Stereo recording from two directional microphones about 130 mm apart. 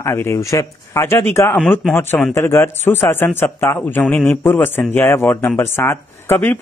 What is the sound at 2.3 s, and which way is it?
Speech, 20° left (ahead or behind).